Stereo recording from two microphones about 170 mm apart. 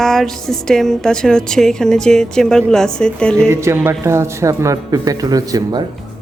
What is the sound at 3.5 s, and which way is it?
A man's voice, 15° right (ahead or behind).